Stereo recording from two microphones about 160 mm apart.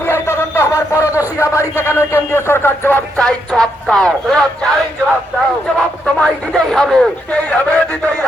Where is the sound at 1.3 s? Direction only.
20° left (ahead or behind).